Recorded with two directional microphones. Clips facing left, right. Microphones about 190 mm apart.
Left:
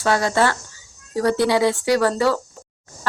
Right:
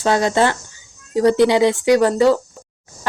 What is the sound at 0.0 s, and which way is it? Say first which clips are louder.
Speech: right 3 dB; 20° right (ahead or behind).